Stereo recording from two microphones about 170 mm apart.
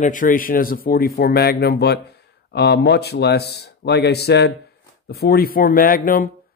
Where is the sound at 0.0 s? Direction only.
50° left (ahead or behind).